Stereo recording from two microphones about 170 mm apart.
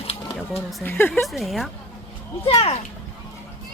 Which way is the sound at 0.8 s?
10° left (ahead or behind).